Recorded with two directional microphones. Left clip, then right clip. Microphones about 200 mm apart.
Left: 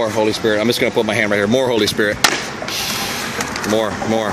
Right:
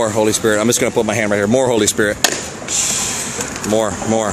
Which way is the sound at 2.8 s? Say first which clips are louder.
Right 2 dB; 15° right (ahead or behind).